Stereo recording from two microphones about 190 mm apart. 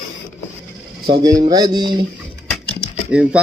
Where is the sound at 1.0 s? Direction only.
20° right (ahead or behind).